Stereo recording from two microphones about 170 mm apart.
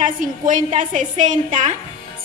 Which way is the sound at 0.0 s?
50° right (ahead or behind).